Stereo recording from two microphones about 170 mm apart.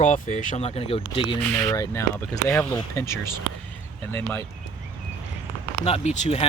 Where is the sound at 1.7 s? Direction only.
20° left (ahead or behind).